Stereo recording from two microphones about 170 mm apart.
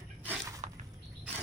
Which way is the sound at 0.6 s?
40° right (ahead or behind).